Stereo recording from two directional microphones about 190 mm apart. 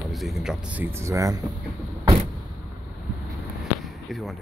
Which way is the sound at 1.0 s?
15° right (ahead or behind).